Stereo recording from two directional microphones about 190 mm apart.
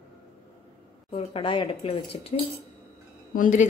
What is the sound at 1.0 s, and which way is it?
Speech, 30° left (ahead or behind).